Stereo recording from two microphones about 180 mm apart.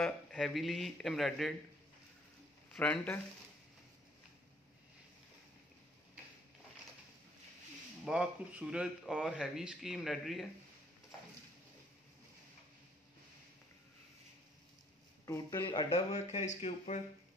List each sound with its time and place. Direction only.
0.0 s speech: centre (ahead or behind)
2.7 s speech: 5° left (ahead or behind)
8.0 s speech: 5° right (ahead or behind)
15.2 s a man's voice: 15° left (ahead or behind)
15.6 s speech: 25° left (ahead or behind)